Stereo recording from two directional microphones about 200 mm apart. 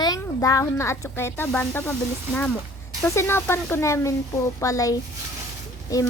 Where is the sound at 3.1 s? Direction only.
10° left (ahead or behind).